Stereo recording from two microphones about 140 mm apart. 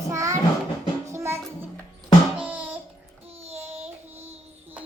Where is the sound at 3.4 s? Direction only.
50° right (ahead or behind).